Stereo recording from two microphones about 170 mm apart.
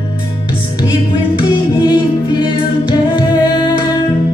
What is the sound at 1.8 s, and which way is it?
Music, 25° left (ahead or behind).